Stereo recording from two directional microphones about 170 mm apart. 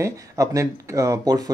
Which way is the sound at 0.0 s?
20° right (ahead or behind).